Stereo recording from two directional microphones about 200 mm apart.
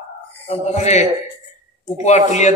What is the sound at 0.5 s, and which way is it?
Speech, 35° left (ahead or behind).